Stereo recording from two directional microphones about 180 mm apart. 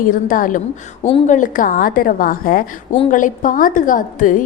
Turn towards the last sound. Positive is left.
turn(degrees=45)  # may be behind; listen again after turning